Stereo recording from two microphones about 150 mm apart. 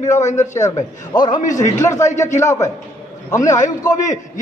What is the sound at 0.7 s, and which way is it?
Speech, 30° left (ahead or behind).